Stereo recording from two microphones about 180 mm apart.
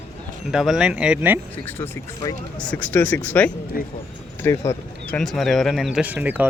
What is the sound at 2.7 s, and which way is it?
Speech, 10° left (ahead or behind).